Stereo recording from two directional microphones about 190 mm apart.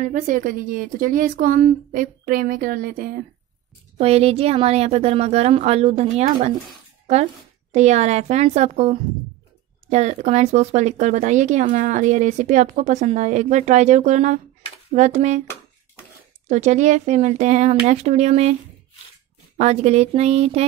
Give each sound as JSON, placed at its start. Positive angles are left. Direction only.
{"t": 0.0, "sound": "a woman's voice", "side_deg": -45}
{"t": 4.0, "sound": "speech", "side_deg": -30}
{"t": 7.7, "sound": "speech", "side_deg": -35}
{"t": 16.4, "sound": "speech", "side_deg": -35}